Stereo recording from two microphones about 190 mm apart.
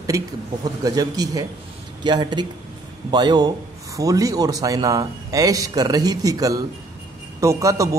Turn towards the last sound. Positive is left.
turn(degrees=-15)  # may be behind; listen again after turning